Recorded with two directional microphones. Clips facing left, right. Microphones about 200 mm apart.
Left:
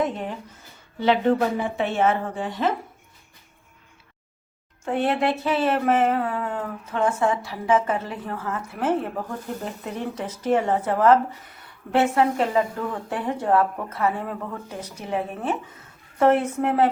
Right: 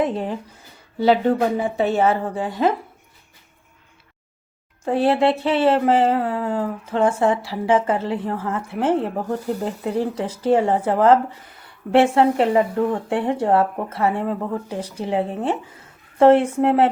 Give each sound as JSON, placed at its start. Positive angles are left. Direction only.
{"t": 0.0, "sound": "speech", "side_deg": -30}
{"t": 4.9, "sound": "speech", "side_deg": -30}